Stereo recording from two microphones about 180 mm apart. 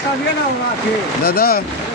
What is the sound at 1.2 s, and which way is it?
Speech, 60° left (ahead or behind).